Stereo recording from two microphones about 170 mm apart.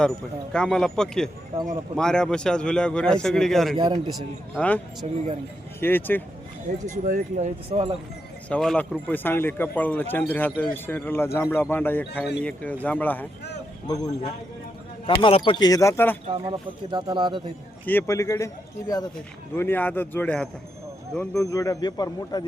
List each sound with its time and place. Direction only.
0.5 s a man's voice: 5° left (ahead or behind)
3.8 s speech: 30° right (ahead or behind)
4.5 s speech: 10° left (ahead or behind)
5.0 s speech: 40° right (ahead or behind)
5.8 s speech: 10° left (ahead or behind)
6.8 s speech: 45° right (ahead or behind)
7.7 s speech: 30° right (ahead or behind)
8.4 s speech: 5° left (ahead or behind)
13.8 s speech: 20° left (ahead or behind)
16.4 s speech: 25° right (ahead or behind)
17.8 s speech: 15° left (ahead or behind)